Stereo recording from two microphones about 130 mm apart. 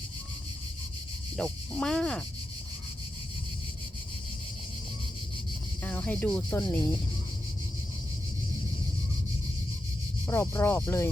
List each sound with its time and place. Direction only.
1.4 s speech: 5° left (ahead or behind)
5.8 s speech: 15° left (ahead or behind)
10.2 s speech: 20° left (ahead or behind)